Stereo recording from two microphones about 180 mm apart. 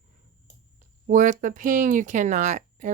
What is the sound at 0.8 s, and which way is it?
Speech, 45° right (ahead or behind).